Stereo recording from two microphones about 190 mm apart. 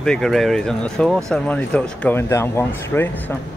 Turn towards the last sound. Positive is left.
turn(degrees=15)  # may be behind; listen again after turning